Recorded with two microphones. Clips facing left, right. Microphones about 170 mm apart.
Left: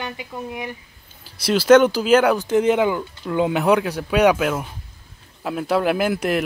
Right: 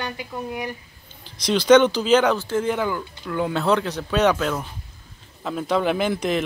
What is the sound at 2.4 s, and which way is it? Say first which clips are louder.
Speech: left 6 dB; 20° left (ahead or behind).